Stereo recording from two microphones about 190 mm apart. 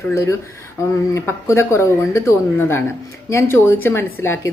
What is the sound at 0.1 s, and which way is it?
A woman's voice, 15° left (ahead or behind).